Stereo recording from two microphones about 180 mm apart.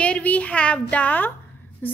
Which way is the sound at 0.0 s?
10° left (ahead or behind).